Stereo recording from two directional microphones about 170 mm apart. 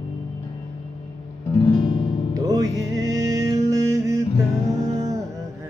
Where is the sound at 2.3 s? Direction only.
20° right (ahead or behind).